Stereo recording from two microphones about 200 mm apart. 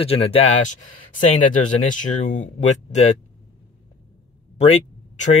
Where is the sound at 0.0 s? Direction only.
30° left (ahead or behind).